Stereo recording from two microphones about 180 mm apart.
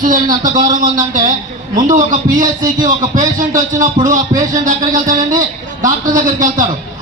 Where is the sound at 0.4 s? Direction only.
50° right (ahead or behind).